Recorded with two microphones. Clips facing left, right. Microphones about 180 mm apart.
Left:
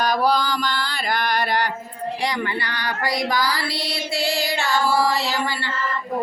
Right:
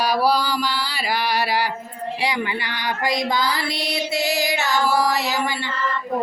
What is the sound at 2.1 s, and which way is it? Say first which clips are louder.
Speech: right 1 dB; 5° right (ahead or behind).